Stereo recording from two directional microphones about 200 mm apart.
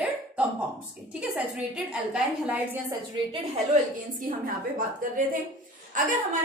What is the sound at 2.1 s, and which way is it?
Speech, 5° right (ahead or behind).